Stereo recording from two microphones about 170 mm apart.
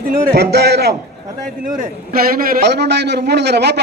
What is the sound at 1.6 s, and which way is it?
A man's voice, 55° right (ahead or behind).